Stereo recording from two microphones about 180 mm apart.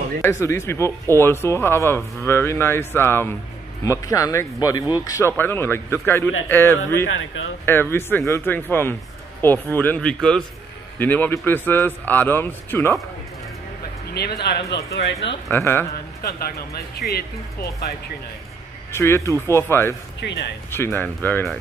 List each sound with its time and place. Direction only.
0.2 s speech: 15° left (ahead or behind)
14.1 s speech: 65° left (ahead or behind)
14.9 s speech: 80° left
15.5 s speech: 10° left (ahead or behind)
17.0 s speech: 45° left (ahead or behind)
18.9 s speech: 15° left (ahead or behind)